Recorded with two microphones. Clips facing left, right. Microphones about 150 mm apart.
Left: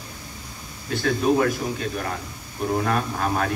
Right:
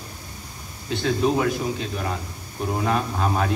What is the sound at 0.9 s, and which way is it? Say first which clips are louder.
A man's voice: left 1 dB; 20° right (ahead or behind).